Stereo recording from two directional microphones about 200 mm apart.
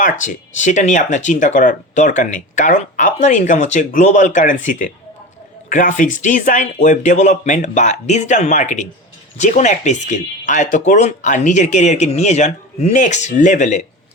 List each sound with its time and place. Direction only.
0.0 s speech: 40° left (ahead or behind)